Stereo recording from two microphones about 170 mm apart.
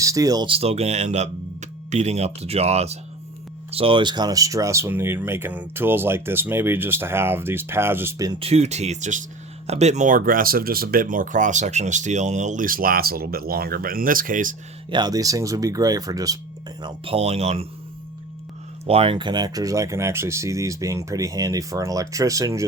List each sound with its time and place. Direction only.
0.0 s speech: 20° right (ahead or behind)
8.3 s speech: 35° right (ahead or behind); by 14.5 s 55° right (ahead or behind)
14.8 s speech: 25° right (ahead or behind)
16.8 s speech: 35° right (ahead or behind)
18.9 s speech: 35° right (ahead or behind)